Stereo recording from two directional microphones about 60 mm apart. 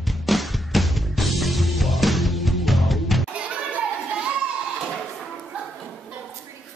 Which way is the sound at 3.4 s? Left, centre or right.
Centre.